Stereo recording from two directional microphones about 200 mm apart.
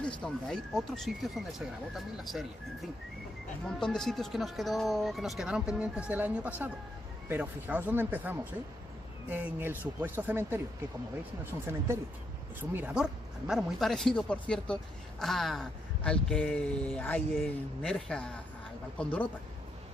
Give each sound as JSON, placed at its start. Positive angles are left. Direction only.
{"t": 0.0, "sound": "speech", "side_deg": 5}
{"t": 12.5, "sound": "speech", "side_deg": -10}